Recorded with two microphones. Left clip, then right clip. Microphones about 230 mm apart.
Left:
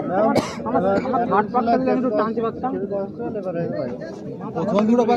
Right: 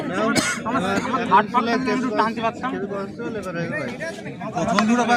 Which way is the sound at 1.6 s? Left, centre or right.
Centre.